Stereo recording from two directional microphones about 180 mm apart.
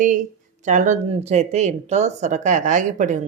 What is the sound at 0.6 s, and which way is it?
Speech, 40° right (ahead or behind).